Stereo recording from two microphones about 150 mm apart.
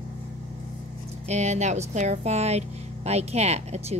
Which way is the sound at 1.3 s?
50° right (ahead or behind).